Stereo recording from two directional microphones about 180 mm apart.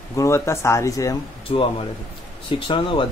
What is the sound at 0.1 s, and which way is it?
Speech, 15° left (ahead or behind).